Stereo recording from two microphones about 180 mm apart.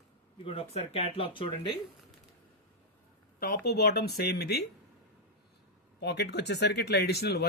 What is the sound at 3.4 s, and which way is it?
Speech, 55° left (ahead or behind).